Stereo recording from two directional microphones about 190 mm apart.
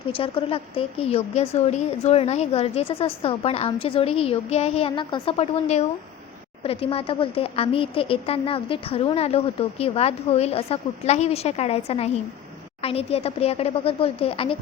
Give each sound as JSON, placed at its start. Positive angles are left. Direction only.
{"t": 0.1, "sound": "speech", "side_deg": 30}